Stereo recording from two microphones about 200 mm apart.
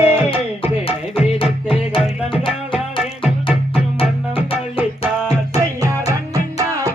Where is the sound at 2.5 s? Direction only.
5° right (ahead or behind).